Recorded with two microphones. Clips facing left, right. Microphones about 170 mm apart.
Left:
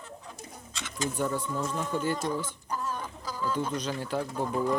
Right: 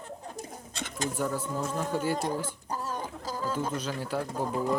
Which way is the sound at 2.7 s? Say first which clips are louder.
Left 1 dB; 35° right (ahead or behind).